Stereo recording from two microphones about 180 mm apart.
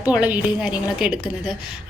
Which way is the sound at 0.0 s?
5° right (ahead or behind).